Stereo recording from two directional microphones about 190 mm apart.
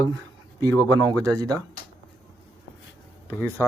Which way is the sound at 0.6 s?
20° right (ahead or behind).